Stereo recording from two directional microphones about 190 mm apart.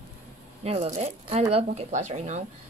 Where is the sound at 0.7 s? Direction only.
35° right (ahead or behind).